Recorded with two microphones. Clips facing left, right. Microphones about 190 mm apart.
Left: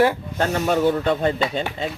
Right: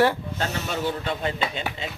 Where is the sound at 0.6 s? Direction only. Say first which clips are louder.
Left 9 dB; 55° left (ahead or behind).